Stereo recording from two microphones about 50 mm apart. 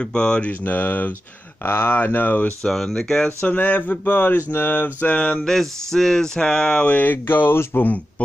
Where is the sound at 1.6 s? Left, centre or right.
Left.